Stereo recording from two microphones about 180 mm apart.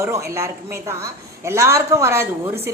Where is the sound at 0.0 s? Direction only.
15° right (ahead or behind).